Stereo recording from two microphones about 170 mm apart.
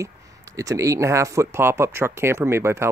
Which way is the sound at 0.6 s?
20° right (ahead or behind).